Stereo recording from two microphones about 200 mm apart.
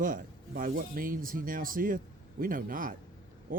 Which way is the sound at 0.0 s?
45° right (ahead or behind).